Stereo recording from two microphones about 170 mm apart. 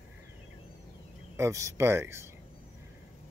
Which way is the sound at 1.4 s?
20° right (ahead or behind).